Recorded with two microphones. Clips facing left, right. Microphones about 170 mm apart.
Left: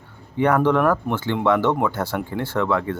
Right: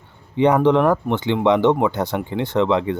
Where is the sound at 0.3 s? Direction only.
20° right (ahead or behind).